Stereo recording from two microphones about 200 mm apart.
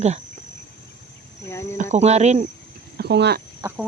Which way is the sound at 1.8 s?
35° right (ahead or behind).